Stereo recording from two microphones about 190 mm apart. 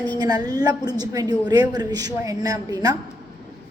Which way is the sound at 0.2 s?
20° right (ahead or behind).